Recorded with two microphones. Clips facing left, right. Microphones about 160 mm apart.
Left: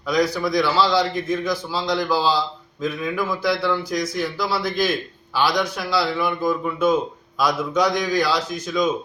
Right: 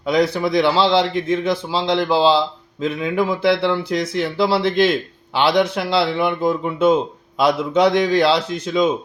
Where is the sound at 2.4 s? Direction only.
65° right (ahead or behind).